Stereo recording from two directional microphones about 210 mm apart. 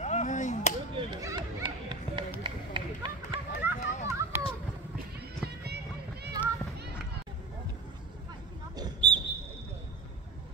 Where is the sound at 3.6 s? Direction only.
10° right (ahead or behind).